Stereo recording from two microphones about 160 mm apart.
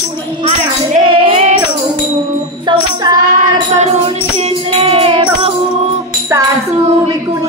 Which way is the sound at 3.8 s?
45° right (ahead or behind).